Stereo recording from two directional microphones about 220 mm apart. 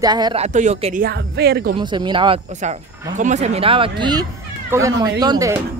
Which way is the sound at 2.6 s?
35° right (ahead or behind).